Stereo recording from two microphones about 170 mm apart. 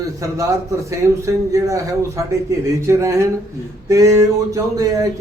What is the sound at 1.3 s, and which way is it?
A man's voice, 20° right (ahead or behind).